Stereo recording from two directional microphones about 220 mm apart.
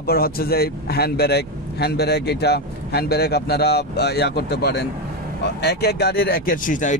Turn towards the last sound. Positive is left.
turn(degrees=35)  # may be behind; listen again after turning